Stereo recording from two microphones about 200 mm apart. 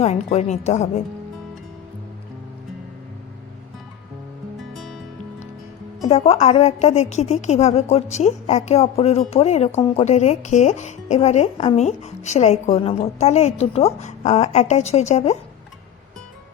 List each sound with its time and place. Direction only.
0.0 s speech: 35° left (ahead or behind)
4.7 s music: centre (ahead or behind)
6.1 s speech: 30° left (ahead or behind)